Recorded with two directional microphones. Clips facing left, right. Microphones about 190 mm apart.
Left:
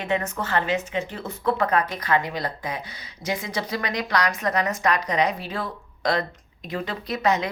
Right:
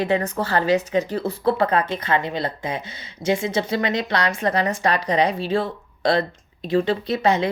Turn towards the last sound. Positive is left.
turn(degrees=-30)  # may be behind; listen again after turning